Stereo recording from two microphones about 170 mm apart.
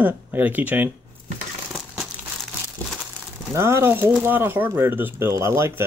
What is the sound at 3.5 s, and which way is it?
Speech, 15° right (ahead or behind).